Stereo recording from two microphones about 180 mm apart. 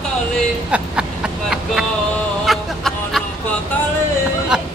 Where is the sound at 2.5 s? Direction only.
Centre (ahead or behind).